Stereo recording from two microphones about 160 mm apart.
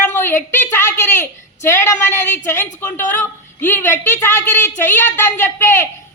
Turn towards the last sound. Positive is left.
turn(degrees=15)  # may be behind; listen again after turning